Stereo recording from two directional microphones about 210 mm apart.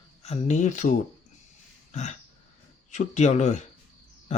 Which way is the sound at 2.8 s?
35° left (ahead or behind).